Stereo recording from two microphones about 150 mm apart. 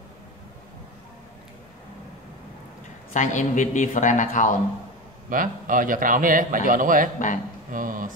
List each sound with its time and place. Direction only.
3.1 s speech: 55° left (ahead or behind)
5.3 s a man's voice: 65° right (ahead or behind)